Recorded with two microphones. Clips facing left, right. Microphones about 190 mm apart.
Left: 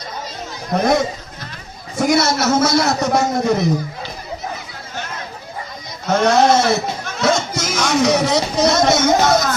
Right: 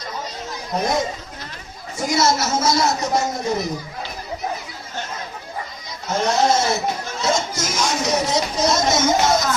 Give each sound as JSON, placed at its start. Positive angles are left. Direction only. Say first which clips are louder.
{"t": 0.7, "sound": "a man's voice", "louder": "left 5 dB", "side_deg": 65}
{"t": 6.1, "sound": "speech", "louder": "left 5 dB", "side_deg": 65}